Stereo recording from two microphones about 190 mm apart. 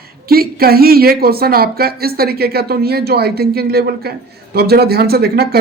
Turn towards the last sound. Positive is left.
turn(degrees=-55)  # may be behind; listen again after turning